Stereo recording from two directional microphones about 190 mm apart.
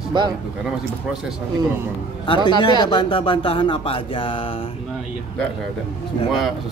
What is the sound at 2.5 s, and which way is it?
Speech, 25° left (ahead or behind).